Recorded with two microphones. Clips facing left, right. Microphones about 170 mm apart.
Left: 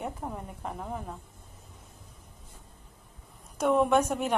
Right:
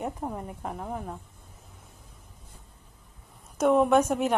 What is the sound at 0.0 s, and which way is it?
Speech, 10° right (ahead or behind).